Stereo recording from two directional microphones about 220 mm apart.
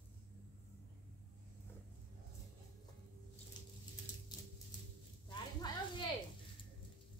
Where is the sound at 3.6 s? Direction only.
20° left (ahead or behind).